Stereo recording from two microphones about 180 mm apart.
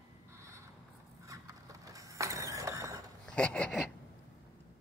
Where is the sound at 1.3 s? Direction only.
20° right (ahead or behind).